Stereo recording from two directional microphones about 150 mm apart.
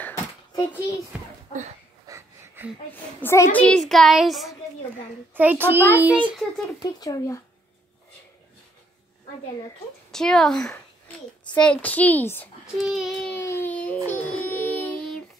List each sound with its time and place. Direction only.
0.0 s a sound: 20° left (ahead or behind)
2.0 s wheeze: 15° right (ahead or behind)
2.9 s a woman's voice: 15° left (ahead or behind)
3.6 s a child's voice: 5° left (ahead or behind)
5.3 s a child's voice: 10° right (ahead or behind)
6.8 s speech: 25° left (ahead or behind)
10.1 s a woman's voice: 5° left (ahead or behind)
12.7 s a child's voice: centre (ahead or behind)
13.3 s a sound: 15° left (ahead or behind)
14.4 s music: 15° left (ahead or behind)